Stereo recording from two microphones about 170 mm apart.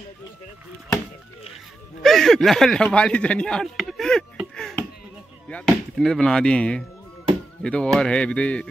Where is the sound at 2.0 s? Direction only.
Centre (ahead or behind).